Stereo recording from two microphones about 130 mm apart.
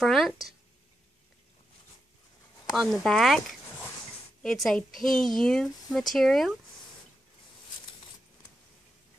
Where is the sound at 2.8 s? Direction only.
Centre (ahead or behind).